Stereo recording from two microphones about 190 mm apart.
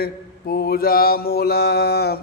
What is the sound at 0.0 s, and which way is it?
Mantra, 55° left (ahead or behind).